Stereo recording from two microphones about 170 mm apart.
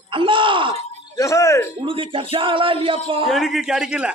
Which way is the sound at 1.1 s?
20° left (ahead or behind).